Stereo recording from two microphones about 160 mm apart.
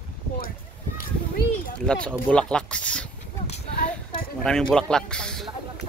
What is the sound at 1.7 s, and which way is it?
Speech, 5° left (ahead or behind).